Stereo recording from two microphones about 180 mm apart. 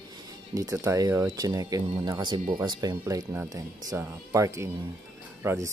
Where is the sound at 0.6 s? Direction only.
20° right (ahead or behind).